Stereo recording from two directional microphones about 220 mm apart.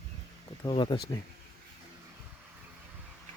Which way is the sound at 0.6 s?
20° left (ahead or behind).